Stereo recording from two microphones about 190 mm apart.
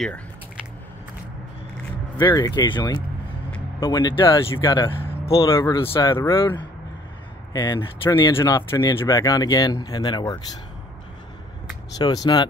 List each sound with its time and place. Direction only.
2.1 s speech: 20° left (ahead or behind)
5.4 s speech: 15° left (ahead or behind)
7.5 s speech: 25° left (ahead or behind)
12.0 s speech: 20° left (ahead or behind)